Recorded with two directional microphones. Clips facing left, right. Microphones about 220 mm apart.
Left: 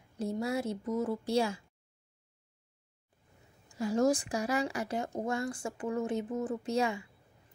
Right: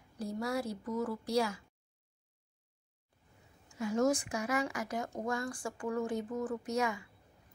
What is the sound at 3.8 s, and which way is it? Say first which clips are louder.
Speech: left 2 dB; 35° left (ahead or behind).